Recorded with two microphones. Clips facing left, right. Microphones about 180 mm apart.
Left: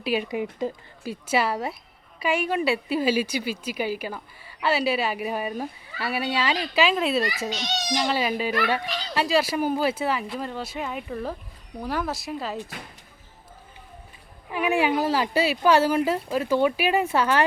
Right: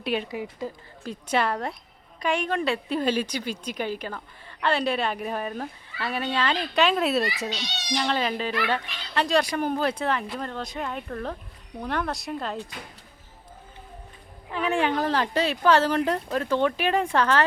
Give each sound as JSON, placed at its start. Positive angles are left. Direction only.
{"t": 0.0, "sound": "speech", "side_deg": 5}
{"t": 0.3, "sound": "speech", "side_deg": 20}
{"t": 1.0, "sound": "a woman's voice", "side_deg": 5}
{"t": 14.5, "sound": "a woman's voice", "side_deg": 10}